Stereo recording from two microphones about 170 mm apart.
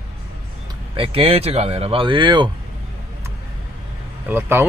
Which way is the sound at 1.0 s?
35° right (ahead or behind).